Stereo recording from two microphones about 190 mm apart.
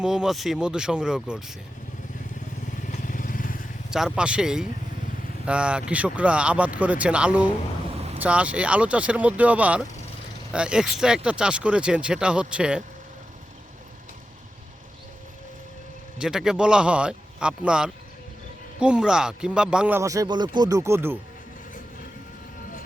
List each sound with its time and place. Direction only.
0.0 s speech: 5° right (ahead or behind)
2.8 s vehicle: 45° left (ahead or behind)
3.8 s speech: 5° right (ahead or behind)
16.2 s speech: 5° right (ahead or behind)